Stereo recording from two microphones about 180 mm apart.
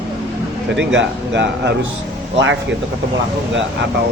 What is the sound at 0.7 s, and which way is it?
Speech, 85° right.